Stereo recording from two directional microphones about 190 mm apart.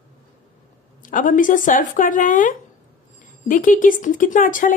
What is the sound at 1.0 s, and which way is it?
A woman's voice, 45° left (ahead or behind).